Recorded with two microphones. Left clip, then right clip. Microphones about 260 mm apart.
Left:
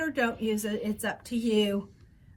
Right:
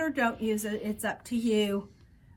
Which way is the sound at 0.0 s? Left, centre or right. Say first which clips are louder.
Even; centre.